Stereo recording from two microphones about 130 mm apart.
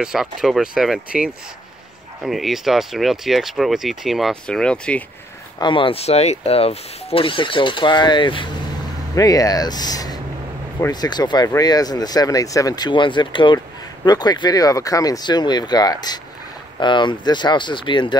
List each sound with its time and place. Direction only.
0.0 s speech: 5° right (ahead or behind)
5.6 s speech: 40° left (ahead or behind)
9.1 s speech: 25° left (ahead or behind)